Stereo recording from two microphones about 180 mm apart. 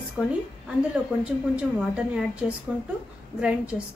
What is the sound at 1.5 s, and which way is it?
A woman's voice, 5° right (ahead or behind).